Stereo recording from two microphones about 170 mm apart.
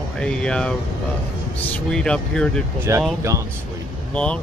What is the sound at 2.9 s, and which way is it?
Speech, 20° right (ahead or behind).